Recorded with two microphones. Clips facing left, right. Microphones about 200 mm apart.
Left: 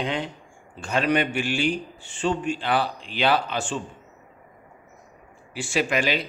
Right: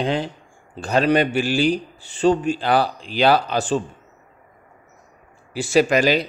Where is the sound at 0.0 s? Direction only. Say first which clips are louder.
Right 5 dB; 35° right (ahead or behind).